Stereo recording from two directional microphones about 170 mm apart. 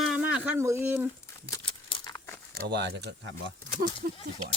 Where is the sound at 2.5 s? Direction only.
75° right (ahead or behind).